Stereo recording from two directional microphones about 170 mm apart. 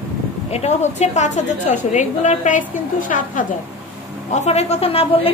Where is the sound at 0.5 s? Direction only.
40° left (ahead or behind).